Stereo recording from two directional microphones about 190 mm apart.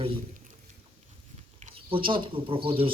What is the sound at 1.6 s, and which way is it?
Speech, 30° right (ahead or behind).